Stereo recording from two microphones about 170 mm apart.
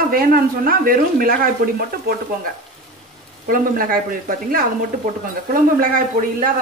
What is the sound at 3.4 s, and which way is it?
Speech, 55° right (ahead or behind).